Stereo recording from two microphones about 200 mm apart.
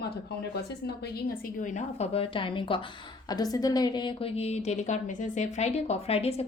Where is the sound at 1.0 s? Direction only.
50° left (ahead or behind).